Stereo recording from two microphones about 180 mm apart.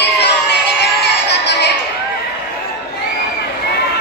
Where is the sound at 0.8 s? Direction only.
70° left (ahead or behind).